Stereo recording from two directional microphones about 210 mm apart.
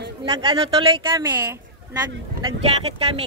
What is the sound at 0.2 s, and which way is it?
Speech, 25° right (ahead or behind).